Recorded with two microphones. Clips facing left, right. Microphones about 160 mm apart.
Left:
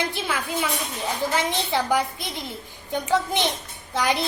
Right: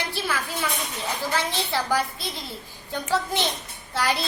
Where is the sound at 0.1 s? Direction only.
20° left (ahead or behind).